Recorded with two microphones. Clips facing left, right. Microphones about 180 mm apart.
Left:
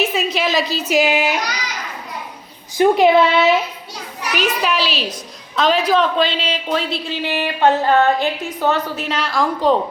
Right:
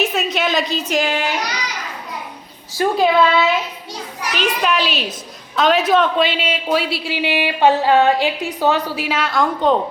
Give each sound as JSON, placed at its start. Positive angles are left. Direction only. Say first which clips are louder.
{"t": 0.0, "sound": "a woman's voice", "louder": "even", "side_deg": 0}
{"t": 2.7, "sound": "speech", "louder": "left 3 dB", "side_deg": 20}
{"t": 4.4, "sound": "a child's voice", "louder": "even", "side_deg": 0}